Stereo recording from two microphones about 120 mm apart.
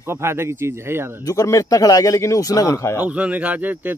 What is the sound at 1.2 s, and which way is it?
Speech, 25° left (ahead or behind).